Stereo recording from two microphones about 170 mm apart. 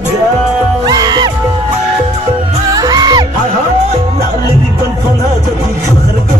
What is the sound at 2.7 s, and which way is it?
Music, 20° right (ahead or behind).